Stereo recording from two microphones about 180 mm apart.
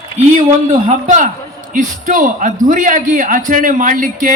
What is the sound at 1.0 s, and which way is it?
A man's voice, 45° right (ahead or behind).